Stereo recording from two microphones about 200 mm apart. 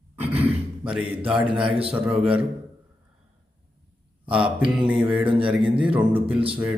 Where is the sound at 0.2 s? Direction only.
10° right (ahead or behind).